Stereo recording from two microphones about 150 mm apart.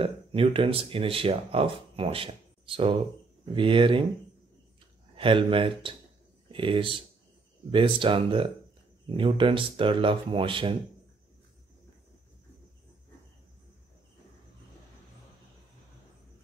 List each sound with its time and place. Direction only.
0.0 s speech: 35° right (ahead or behind)
5.1 s speech: 35° right (ahead or behind)